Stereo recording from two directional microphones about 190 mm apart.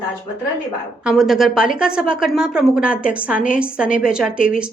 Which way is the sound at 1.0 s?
Centre (ahead or behind).